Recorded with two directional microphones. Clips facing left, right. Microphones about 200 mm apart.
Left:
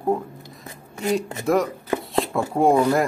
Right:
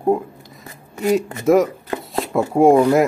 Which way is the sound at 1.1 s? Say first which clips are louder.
Right 6 dB; centre (ahead or behind).